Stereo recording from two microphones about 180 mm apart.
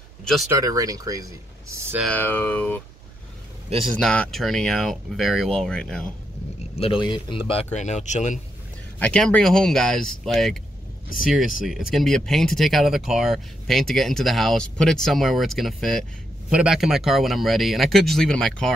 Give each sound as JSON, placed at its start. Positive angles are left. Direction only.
{"t": 0.2, "sound": "speech", "side_deg": 0}
{"t": 0.6, "sound": "speech", "side_deg": -20}
{"t": 2.0, "sound": "speech", "side_deg": 10}
{"t": 4.0, "sound": "speech", "side_deg": 5}
{"t": 6.7, "sound": "speech", "side_deg": 30}
{"t": 9.0, "sound": "speech", "side_deg": 5}
{"t": 11.6, "sound": "speech", "side_deg": 0}